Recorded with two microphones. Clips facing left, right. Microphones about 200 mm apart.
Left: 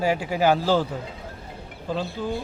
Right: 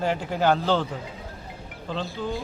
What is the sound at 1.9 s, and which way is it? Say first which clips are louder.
Speech: left 2 dB; centre (ahead or behind).